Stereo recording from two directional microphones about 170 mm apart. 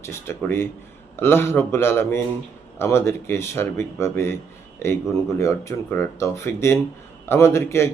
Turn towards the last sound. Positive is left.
turn(degrees=15)  # may be behind; listen again after turning